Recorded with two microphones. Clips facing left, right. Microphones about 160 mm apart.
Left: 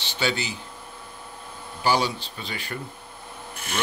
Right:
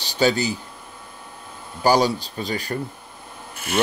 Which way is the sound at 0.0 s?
40° right (ahead or behind).